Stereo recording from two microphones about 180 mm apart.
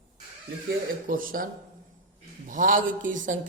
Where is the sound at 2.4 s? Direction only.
50° right (ahead or behind).